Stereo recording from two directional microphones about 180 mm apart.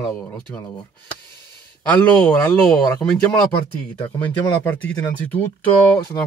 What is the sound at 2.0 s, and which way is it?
Speech, 5° left (ahead or behind).